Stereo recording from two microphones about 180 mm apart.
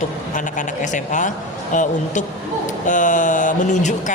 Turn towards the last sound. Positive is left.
turn(degrees=40)  # may be behind; listen again after turning